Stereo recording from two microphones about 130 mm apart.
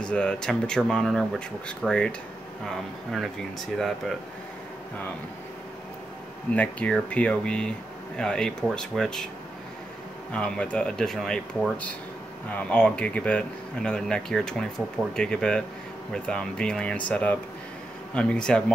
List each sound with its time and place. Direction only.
0.0 s speech: 5° left (ahead or behind)
6.5 s speech: 10° left (ahead or behind)
10.3 s speech: 10° left (ahead or behind)